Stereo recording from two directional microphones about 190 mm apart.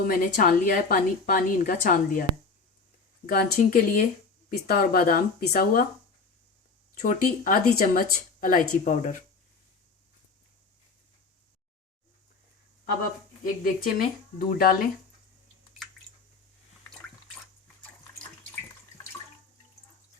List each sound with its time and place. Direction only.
0.0 s a woman's voice: 50° left (ahead or behind)
3.2 s a woman's voice: 45° left (ahead or behind)
7.0 s a woman's voice: 45° left (ahead or behind)
13.4 s a woman's voice: 50° left (ahead or behind)